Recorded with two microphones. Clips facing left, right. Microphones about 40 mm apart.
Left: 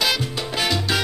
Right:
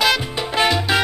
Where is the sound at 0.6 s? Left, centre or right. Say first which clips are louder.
Right 5 dB; right.